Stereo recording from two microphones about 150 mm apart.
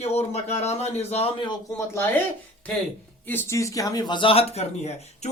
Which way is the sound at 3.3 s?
15° left (ahead or behind).